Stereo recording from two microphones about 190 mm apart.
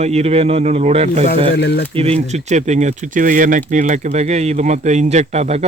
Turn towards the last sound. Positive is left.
turn(degrees=-35)  # may be behind; listen again after turning